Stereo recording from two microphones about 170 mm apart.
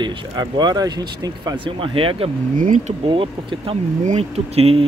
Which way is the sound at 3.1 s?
30° right (ahead or behind).